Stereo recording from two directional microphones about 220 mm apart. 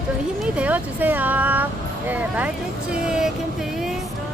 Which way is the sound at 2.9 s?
5° right (ahead or behind).